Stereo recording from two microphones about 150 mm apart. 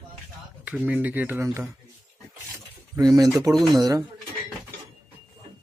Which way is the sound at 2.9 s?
25° right (ahead or behind).